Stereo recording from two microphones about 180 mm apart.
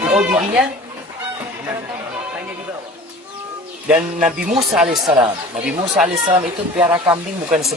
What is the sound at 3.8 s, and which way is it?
Speech, 5° right (ahead or behind).